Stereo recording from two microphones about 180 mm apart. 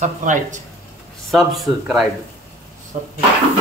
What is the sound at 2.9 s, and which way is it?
Speech, 40° right (ahead or behind).